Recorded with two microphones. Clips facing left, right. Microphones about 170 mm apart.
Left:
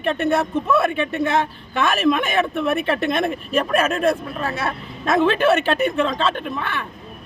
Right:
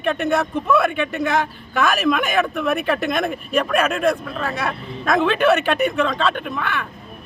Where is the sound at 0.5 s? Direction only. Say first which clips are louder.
Right 1 dB; centre (ahead or behind).